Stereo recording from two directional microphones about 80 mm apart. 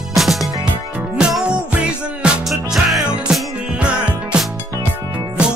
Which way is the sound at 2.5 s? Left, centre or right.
Centre.